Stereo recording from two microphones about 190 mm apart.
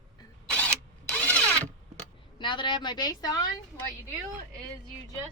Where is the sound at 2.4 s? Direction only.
25° left (ahead or behind).